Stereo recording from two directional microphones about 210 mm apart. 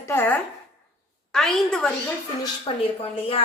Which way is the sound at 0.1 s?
10° left (ahead or behind).